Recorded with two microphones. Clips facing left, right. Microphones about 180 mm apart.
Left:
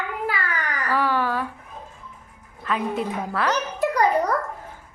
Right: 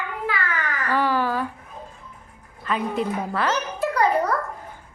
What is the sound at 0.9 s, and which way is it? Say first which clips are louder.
Speech: right 1 dB; centre (ahead or behind).